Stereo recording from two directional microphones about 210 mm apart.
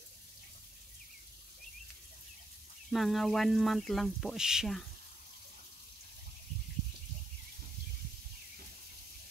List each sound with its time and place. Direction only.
2.9 s speech: centre (ahead or behind)